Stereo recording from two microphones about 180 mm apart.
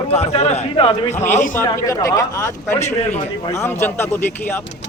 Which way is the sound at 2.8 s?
40° left (ahead or behind).